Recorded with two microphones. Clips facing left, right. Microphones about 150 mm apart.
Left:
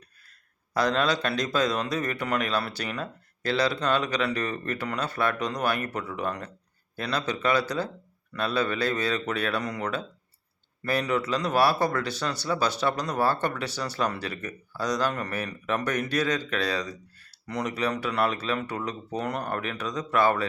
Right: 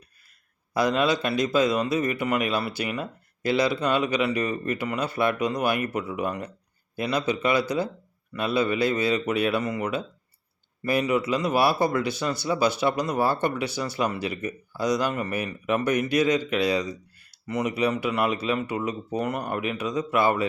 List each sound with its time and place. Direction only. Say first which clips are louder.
0.7 s a man's voice: right 2 dB; 10° right (ahead or behind)